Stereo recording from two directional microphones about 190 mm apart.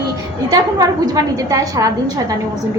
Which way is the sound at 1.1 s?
20° right (ahead or behind).